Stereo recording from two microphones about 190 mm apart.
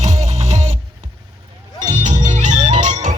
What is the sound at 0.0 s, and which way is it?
Music, 35° right (ahead or behind).